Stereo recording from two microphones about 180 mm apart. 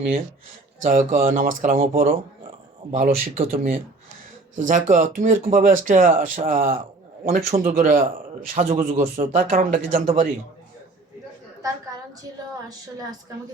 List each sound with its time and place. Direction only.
0.8 s speech: 45° right (ahead or behind)
2.9 s speech: 40° right (ahead or behind)
3.5 s speech: 55° right (ahead or behind); by 9.3 s 35° right (ahead or behind)
9.3 s speech: 50° right (ahead or behind)